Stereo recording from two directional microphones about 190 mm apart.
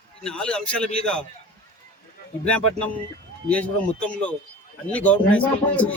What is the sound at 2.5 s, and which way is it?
A man's voice, 5° left (ahead or behind).